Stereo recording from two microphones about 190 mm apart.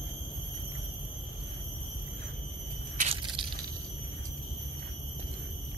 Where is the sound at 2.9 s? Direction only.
30° right (ahead or behind).